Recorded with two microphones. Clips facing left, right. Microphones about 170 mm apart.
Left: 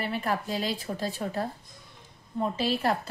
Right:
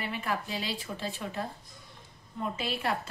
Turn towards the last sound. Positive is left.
turn(degrees=35)  # may be behind; listen again after turning